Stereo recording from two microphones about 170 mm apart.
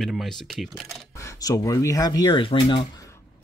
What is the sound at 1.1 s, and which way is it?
Speech, 20° left (ahead or behind).